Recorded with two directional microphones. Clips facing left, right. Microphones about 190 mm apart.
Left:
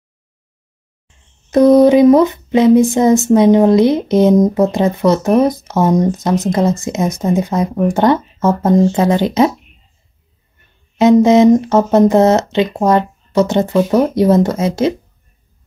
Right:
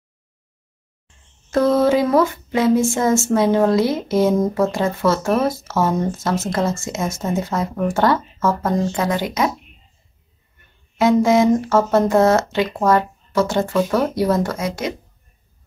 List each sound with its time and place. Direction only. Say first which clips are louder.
1.5 s speech: left 8 dB; 15° left (ahead or behind)
11.0 s speech: left 6 dB; 20° left (ahead or behind)